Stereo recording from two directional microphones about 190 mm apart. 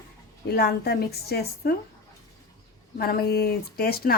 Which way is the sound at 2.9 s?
55° left (ahead or behind).